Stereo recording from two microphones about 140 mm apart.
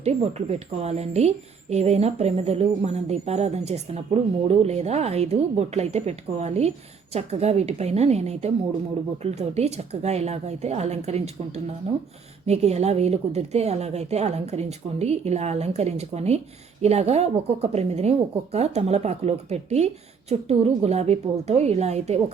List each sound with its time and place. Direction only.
0.0 s a woman's voice: 50° right (ahead or behind)